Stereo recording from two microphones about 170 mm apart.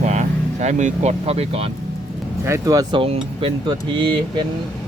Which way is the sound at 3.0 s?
30° right (ahead or behind).